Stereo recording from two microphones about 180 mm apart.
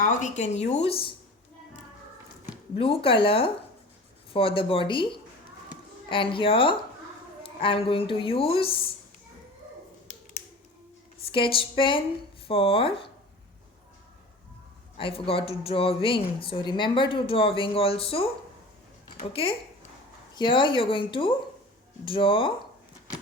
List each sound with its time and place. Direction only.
0.0 s speech: 45° left (ahead or behind)
2.7 s speech: 30° left (ahead or behind)
11.3 s speech: 30° left (ahead or behind)
14.9 s speech: 30° left (ahead or behind)
19.3 s speech: 30° left (ahead or behind)